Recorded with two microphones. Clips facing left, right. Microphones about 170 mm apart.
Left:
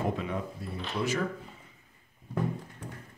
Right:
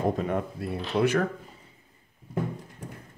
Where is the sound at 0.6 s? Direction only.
60° right (ahead or behind).